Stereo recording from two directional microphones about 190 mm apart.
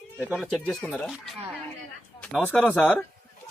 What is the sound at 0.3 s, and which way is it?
Speech, centre (ahead or behind).